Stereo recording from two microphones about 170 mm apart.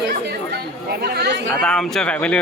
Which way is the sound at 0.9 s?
70° right (ahead or behind).